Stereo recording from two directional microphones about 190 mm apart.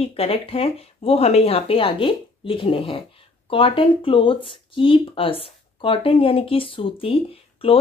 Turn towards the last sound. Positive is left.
turn(degrees=30)  # may be behind; listen again after turning